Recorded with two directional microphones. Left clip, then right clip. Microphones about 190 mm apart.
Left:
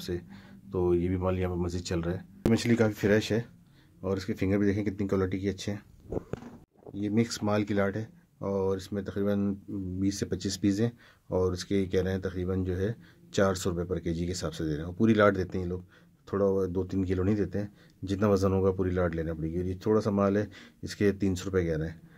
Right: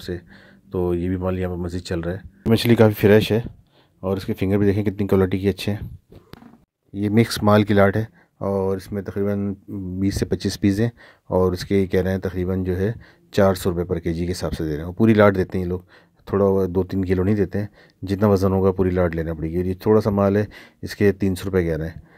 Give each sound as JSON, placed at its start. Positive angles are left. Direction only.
{"t": 0.0, "sound": "speech", "side_deg": -25}
{"t": 2.5, "sound": "a man's voice", "side_deg": -40}
{"t": 7.0, "sound": "a man's voice", "side_deg": -45}